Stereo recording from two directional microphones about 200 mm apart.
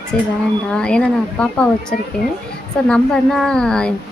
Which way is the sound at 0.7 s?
5° left (ahead or behind).